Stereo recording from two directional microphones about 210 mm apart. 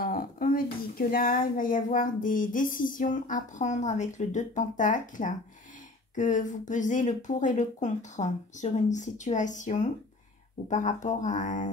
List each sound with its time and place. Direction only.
0.0 s speech: 40° left (ahead or behind)